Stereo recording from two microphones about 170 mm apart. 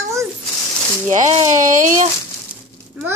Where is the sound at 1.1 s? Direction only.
45° right (ahead or behind).